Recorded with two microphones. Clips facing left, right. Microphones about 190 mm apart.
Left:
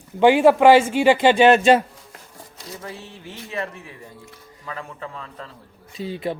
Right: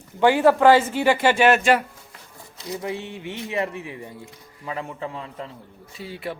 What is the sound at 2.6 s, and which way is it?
Speech, 20° right (ahead or behind).